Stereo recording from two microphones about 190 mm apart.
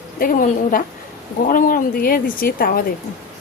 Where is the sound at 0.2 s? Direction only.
45° left (ahead or behind).